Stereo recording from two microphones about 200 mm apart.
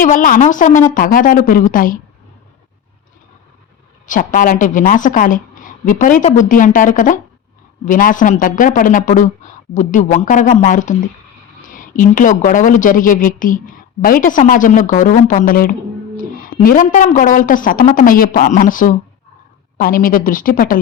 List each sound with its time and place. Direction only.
0.0 s a woman's voice: 40° left (ahead or behind)
4.0 s a woman's voice: 40° left (ahead or behind)